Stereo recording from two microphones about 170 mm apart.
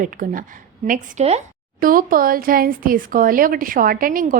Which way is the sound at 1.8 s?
55° right (ahead or behind).